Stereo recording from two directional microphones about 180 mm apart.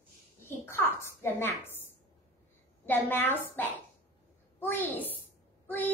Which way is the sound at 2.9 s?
10° left (ahead or behind).